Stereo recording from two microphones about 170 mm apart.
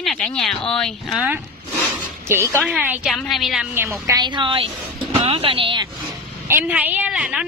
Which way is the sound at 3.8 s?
15° right (ahead or behind).